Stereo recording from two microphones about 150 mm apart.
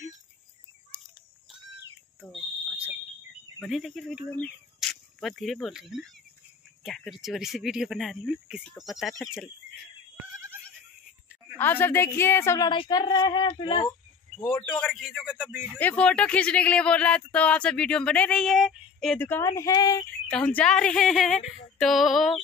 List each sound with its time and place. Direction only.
3.6 s speech: centre (ahead or behind)
11.5 s speech: 15° left (ahead or behind)
12.6 s speech: 35° left (ahead or behind)
14.7 s speech: 5° left (ahead or behind)
15.8 s speech: 10° left (ahead or behind)
19.1 s speech: 15° left (ahead or behind)
20.1 s speech: 5° left (ahead or behind)